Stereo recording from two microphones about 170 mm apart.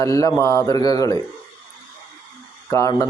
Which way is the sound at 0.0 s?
20° left (ahead or behind).